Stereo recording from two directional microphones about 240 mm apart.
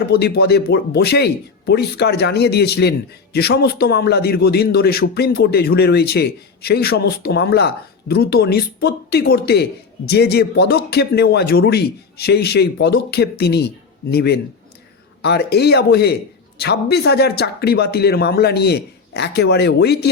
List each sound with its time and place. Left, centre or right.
0.1 s a man's voice: left